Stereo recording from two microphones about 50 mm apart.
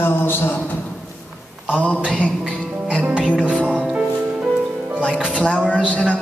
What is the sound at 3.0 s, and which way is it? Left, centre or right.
Music, right.